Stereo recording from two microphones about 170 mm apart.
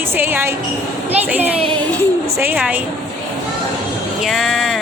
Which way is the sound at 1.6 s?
30° right (ahead or behind).